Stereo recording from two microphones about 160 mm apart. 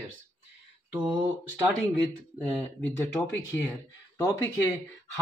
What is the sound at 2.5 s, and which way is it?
Speech, 10° left (ahead or behind).